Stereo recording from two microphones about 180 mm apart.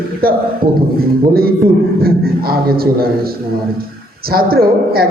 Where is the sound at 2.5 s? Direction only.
55° right (ahead or behind).